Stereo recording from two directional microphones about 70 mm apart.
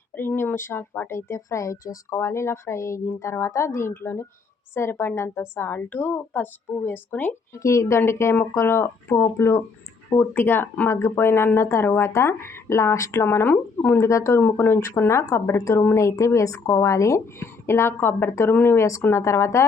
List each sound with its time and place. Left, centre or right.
0.2 s a woman's voice: left
7.5 s a woman's voice: left
13.2 s a woman's voice: left
14.0 s a woman's voice: left
14.4 s a woman's voice: left
14.8 s a woman's voice: left